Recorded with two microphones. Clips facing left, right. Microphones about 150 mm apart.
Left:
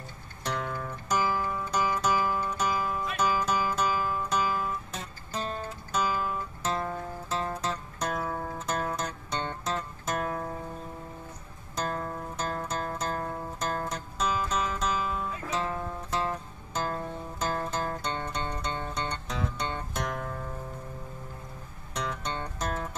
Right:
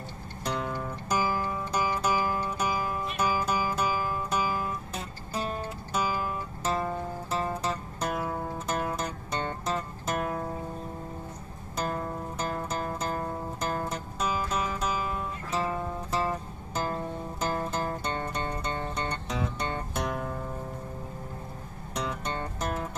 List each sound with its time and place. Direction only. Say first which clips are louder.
0.5 s music: right 1 dB; 30° right (ahead or behind)
0.7 s music: even; 10° right (ahead or behind)
11.7 s music: right 1 dB; 10° right (ahead or behind)
22.2 s music: right 1 dB; 10° right (ahead or behind)